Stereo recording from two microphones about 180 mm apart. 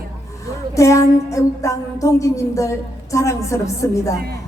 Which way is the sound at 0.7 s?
15° left (ahead or behind).